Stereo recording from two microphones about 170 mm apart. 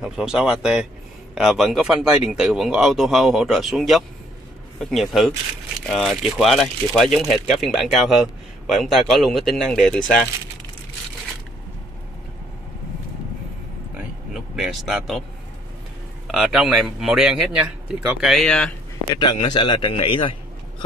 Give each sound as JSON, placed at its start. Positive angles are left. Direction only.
{"t": 0.0, "sound": "speech", "side_deg": -5}
{"t": 14.5, "sound": "speech", "side_deg": 0}
{"t": 16.3, "sound": "speech", "side_deg": -5}
{"t": 19.5, "sound": "a man's voice", "side_deg": 30}